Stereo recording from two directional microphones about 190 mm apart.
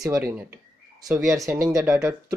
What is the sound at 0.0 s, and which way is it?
Speech, 10° right (ahead or behind).